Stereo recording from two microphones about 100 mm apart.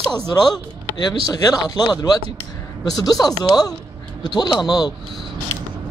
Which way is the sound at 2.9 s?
40° left (ahead or behind).